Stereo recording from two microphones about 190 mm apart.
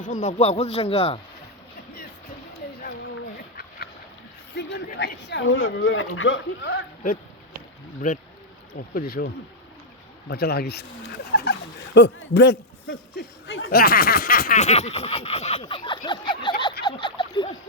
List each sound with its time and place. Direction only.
0.0 s snicker: 40° left (ahead or behind)
3.3 s duck: 55° left (ahead or behind)
4.5 s speech: 60° left (ahead or behind); by 6.8 s 80° left
8.0 s speech: 45° left (ahead or behind); by 13.7 s 90° left
13.7 s snicker: 50° left (ahead or behind); by 15.6 s 35° left (ahead or behind)
15.6 s a sound: 25° left (ahead or behind)
16.8 s turkey: 25° left (ahead or behind)